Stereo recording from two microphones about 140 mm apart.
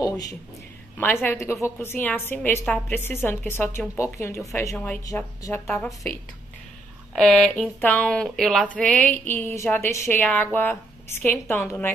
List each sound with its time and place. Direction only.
0.0 s speech: 25° left (ahead or behind)
0.9 s a woman's voice: 15° left (ahead or behind)
4.7 s a woman's voice: 10° left (ahead or behind)
5.0 s a woman's voice: 20° left (ahead or behind)
5.8 s speech: 5° left (ahead or behind)
7.2 s a woman's voice: 5° left (ahead or behind)